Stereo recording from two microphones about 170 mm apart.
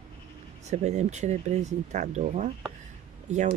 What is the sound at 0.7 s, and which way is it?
Speech, 40° right (ahead or behind).